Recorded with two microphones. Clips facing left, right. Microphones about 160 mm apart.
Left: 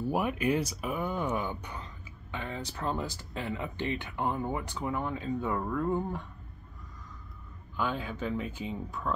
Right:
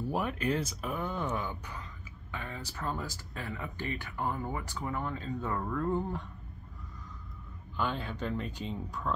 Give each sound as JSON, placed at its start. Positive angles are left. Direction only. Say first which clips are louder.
{"t": 0.1, "sound": "speech", "louder": "left 3 dB", "side_deg": 10}
{"t": 2.3, "sound": "a sound", "louder": "left 4 dB", "side_deg": 20}
{"t": 2.8, "sound": "speech", "louder": "left 3 dB", "side_deg": 20}
{"t": 7.7, "sound": "speech", "louder": "left 1 dB", "side_deg": 5}